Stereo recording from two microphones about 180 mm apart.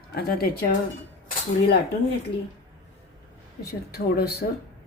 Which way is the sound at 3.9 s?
60° left (ahead or behind).